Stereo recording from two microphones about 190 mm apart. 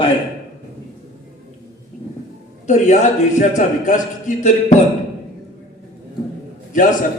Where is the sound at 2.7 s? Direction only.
40° left (ahead or behind).